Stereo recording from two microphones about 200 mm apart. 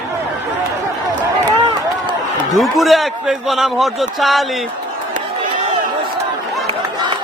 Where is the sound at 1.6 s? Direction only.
20° right (ahead or behind).